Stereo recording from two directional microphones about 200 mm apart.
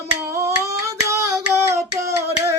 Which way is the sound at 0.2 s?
15° right (ahead or behind).